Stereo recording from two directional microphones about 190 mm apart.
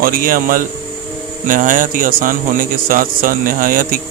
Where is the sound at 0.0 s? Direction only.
50° right (ahead or behind).